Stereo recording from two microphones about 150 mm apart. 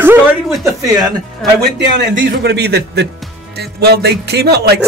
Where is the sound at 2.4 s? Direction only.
90° right.